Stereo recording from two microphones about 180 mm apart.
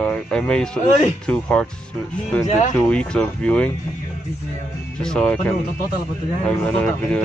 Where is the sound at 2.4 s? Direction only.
40° left (ahead or behind).